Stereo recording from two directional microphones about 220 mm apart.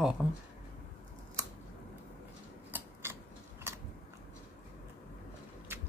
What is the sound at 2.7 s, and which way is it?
Scissors, 10° right (ahead or behind).